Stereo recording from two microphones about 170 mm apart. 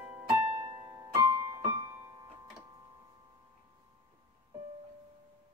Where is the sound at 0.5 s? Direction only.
20° right (ahead or behind).